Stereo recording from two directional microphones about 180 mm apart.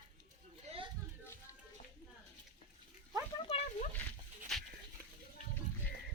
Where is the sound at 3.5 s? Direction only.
30° left (ahead or behind).